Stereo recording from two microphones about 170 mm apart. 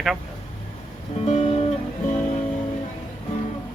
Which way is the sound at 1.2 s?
40° left (ahead or behind).